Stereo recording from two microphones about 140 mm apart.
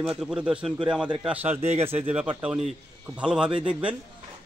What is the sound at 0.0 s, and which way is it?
A man's voice, 5° right (ahead or behind).